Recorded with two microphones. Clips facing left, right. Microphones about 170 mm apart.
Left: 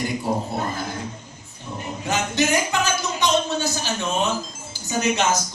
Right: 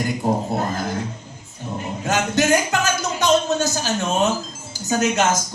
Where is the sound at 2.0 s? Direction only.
45° right (ahead or behind).